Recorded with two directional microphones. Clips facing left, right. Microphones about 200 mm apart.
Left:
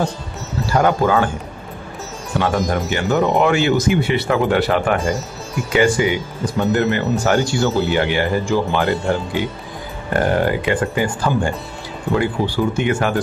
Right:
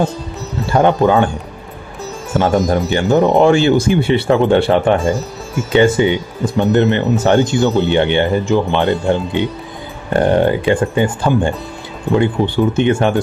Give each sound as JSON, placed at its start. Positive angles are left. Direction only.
{"t": 0.7, "sound": "speech", "side_deg": -25}
{"t": 2.9, "sound": "speech", "side_deg": -25}